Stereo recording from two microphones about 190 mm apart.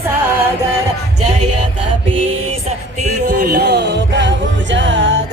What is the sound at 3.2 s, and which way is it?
Music, 60° right (ahead or behind).